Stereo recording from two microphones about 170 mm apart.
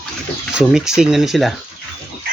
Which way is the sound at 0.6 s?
5° right (ahead or behind).